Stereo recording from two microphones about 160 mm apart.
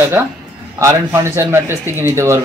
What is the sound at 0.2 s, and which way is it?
A man's voice, 10° right (ahead or behind).